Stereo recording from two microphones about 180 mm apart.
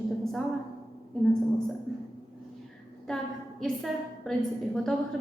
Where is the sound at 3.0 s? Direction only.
5° left (ahead or behind).